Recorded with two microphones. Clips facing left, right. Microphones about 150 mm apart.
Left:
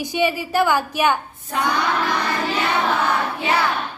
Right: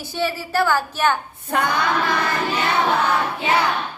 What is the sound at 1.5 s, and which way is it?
Female singing, 60° right (ahead or behind).